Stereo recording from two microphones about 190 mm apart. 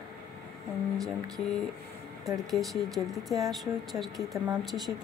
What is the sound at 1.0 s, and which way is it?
Speech, 20° right (ahead or behind).